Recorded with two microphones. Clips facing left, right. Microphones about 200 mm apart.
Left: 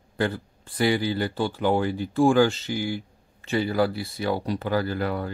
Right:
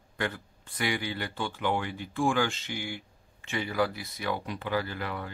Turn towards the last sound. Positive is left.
turn(degrees=40)  # may be behind; listen again after turning